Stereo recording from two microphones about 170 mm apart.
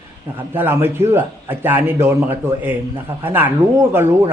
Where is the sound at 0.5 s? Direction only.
10° right (ahead or behind).